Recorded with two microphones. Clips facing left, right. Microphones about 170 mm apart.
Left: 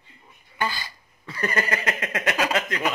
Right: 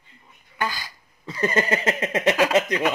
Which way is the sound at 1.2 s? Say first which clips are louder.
Right 4 dB; 25° right (ahead or behind).